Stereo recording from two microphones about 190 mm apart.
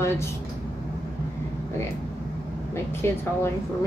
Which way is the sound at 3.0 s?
15° left (ahead or behind).